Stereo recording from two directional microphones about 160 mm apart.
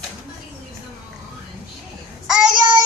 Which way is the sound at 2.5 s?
30° right (ahead or behind).